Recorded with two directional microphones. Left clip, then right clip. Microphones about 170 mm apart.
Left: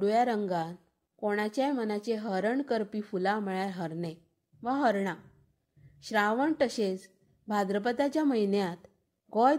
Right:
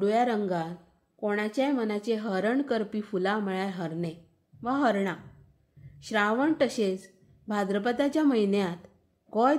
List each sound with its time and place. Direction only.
0.0 s a woman's voice: 35° left (ahead or behind)